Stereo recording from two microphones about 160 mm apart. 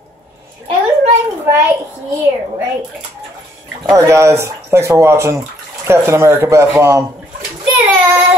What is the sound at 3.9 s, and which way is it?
Speech, 20° right (ahead or behind).